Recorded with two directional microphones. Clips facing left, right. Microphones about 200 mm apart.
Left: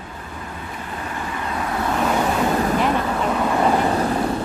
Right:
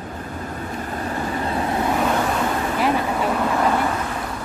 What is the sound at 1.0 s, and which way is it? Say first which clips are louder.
Vehicle: right 4 dB; 35° right (ahead or behind).